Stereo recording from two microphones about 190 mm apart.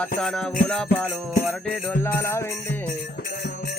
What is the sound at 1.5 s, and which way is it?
Music, 10° left (ahead or behind).